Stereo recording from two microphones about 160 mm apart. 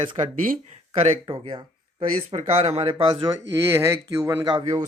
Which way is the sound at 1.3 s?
30° right (ahead or behind).